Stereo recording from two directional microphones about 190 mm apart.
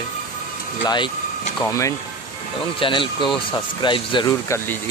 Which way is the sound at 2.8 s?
25° left (ahead or behind).